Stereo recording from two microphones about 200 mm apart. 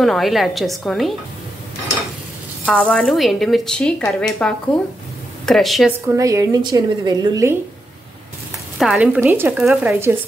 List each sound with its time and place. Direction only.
0.0 s speech: centre (ahead or behind)
2.6 s speech: 5° left (ahead or behind)
6.1 s a woman's voice: 15° right (ahead or behind)
8.7 s speech: centre (ahead or behind)